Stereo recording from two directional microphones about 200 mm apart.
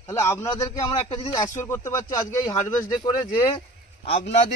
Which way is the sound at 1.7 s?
15° left (ahead or behind).